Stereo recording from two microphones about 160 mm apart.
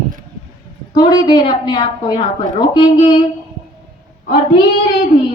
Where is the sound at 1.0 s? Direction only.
25° left (ahead or behind).